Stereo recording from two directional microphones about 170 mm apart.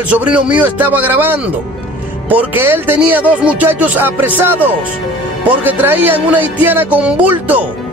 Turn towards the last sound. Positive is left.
turn(degrees=-10)  # may be behind; listen again after turning